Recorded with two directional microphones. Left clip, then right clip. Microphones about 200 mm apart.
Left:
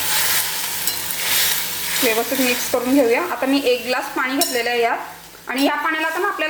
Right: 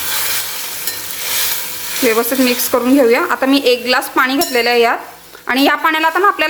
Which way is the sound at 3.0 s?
45° right (ahead or behind).